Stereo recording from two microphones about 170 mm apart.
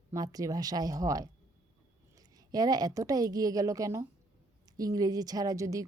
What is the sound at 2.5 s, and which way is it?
Speech, 25° right (ahead or behind).